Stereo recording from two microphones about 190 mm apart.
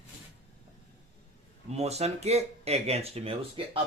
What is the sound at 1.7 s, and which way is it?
Speech, 35° right (ahead or behind).